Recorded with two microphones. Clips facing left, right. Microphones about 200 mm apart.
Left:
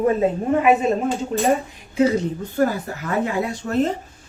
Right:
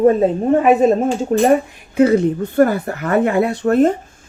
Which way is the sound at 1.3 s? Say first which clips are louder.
Right 8 dB; 50° right (ahead or behind).